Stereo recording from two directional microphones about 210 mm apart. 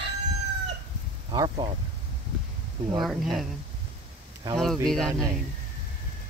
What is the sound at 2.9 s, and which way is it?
Speech, centre (ahead or behind).